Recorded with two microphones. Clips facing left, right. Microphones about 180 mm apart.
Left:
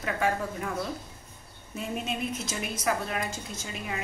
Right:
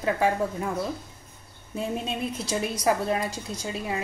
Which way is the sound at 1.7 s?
30° right (ahead or behind).